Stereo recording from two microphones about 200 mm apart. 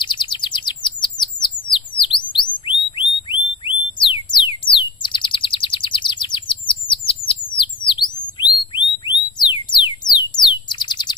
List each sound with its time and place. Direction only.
0.0 s chirp: 25° left (ahead or behind)
1.7 s a sound: 25° left (ahead or behind)
4.3 s bird: 25° left (ahead or behind)
7.5 s chirp tone: 25° left (ahead or behind)
9.4 s music: 20° left (ahead or behind)
10.7 s bird: 20° left (ahead or behind)